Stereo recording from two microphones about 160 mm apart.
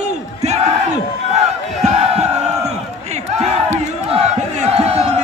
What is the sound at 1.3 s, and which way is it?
Battle cry, 40° right (ahead or behind).